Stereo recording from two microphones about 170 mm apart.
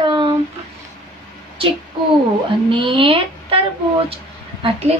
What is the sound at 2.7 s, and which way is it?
Speech, 30° right (ahead or behind).